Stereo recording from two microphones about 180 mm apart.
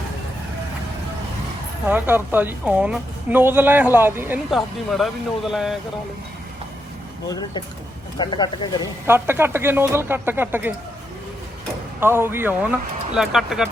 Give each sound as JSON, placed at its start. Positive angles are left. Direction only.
{"t": 1.9, "sound": "a woman's voice", "side_deg": -10}
{"t": 4.5, "sound": "speech", "side_deg": 0}
{"t": 7.3, "sound": "speech", "side_deg": 20}
{"t": 9.0, "sound": "a woman's voice", "side_deg": -10}
{"t": 11.9, "sound": "a woman's voice", "side_deg": -15}